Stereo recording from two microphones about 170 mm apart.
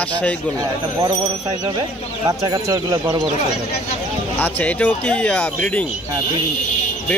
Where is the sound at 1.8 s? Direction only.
20° right (ahead or behind).